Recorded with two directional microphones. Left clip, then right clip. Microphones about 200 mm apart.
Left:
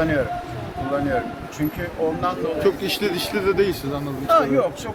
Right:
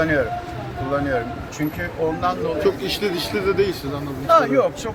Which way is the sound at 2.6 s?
55° left (ahead or behind).